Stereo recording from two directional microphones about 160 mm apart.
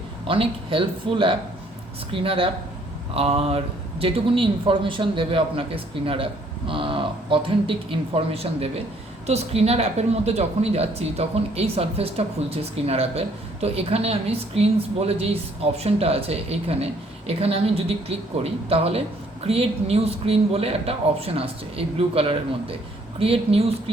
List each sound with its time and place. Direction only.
0.3 s a woman's voice: 35° right (ahead or behind)